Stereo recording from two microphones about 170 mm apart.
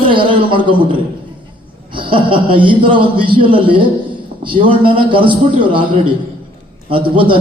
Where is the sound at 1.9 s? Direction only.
30° right (ahead or behind).